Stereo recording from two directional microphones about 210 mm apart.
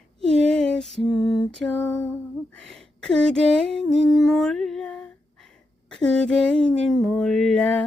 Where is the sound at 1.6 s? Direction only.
5° left (ahead or behind).